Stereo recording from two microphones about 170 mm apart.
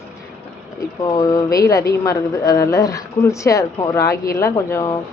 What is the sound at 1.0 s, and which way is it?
Speech, 20° left (ahead or behind).